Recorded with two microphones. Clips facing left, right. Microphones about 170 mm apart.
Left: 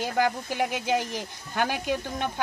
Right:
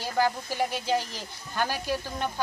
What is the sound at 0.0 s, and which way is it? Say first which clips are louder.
Speech: left 1 dB; 15° left (ahead or behind).